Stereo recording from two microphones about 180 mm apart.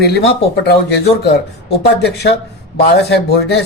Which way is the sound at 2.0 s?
65° left (ahead or behind).